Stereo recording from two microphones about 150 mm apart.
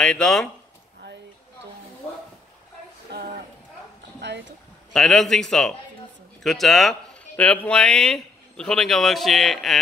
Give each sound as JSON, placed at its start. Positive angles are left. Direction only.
{"t": 0.0, "sound": "speech", "side_deg": 5}
{"t": 3.1, "sound": "speech", "side_deg": -90}
{"t": 4.9, "sound": "speech", "side_deg": 0}